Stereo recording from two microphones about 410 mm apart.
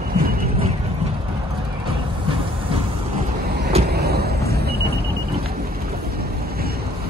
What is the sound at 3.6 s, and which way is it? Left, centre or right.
Vehicle, centre.